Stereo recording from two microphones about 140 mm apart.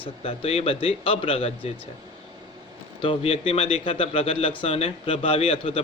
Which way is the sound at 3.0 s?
40° left (ahead or behind).